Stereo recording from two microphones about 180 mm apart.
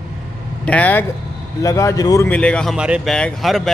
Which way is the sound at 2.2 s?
5° left (ahead or behind).